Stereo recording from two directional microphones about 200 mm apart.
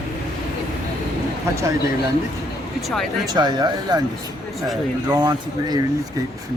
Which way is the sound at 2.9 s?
Centre (ahead or behind).